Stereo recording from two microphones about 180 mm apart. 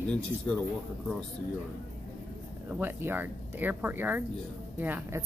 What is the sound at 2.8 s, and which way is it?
Speech, 10° right (ahead or behind).